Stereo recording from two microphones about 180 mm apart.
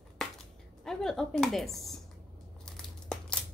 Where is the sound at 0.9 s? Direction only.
Centre (ahead or behind).